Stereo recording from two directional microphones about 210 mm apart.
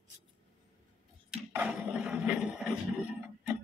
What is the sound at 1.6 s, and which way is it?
A man's voice, 5° right (ahead or behind).